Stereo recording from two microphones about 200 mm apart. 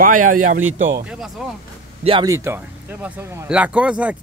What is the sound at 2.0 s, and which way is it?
Speech, 20° right (ahead or behind).